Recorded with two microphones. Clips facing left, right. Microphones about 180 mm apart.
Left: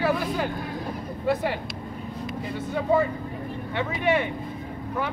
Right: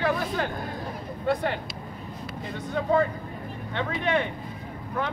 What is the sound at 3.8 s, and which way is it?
Speech, 10° left (ahead or behind).